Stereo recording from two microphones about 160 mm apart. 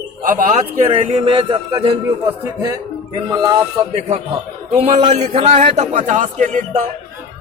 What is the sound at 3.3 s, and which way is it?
Speech, 25° right (ahead or behind).